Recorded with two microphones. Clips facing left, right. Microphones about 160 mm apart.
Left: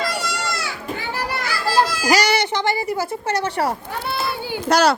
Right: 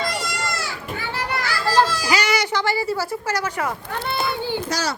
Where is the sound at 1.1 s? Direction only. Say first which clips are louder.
Right 1 dB; 10° left (ahead or behind).